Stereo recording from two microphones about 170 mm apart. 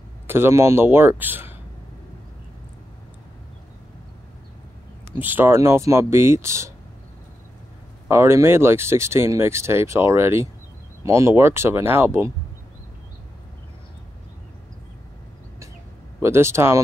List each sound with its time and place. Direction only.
0.3 s speech: 15° right (ahead or behind)
5.2 s speech: 10° right (ahead or behind)
8.1 s speech: 15° right (ahead or behind)
16.2 s speech: 15° right (ahead or behind)